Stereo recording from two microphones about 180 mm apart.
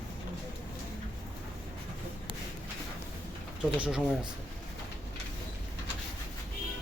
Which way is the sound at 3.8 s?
5° right (ahead or behind).